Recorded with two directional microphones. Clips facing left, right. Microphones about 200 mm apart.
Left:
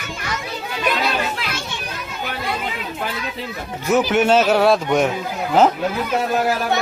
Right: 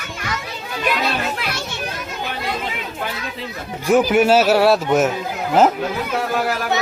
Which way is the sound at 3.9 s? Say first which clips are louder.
Right 2 dB; 10° right (ahead or behind).